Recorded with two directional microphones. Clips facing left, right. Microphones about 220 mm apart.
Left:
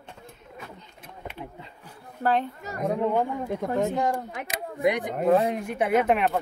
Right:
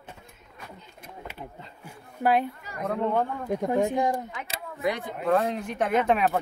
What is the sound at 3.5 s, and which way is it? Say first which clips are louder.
Speech: right 1 dB; 15° right (ahead or behind).